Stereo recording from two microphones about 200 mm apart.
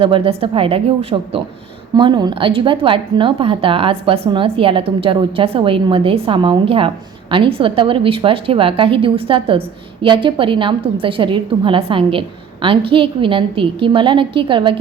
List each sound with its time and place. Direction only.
0.0 s speech: 25° right (ahead or behind)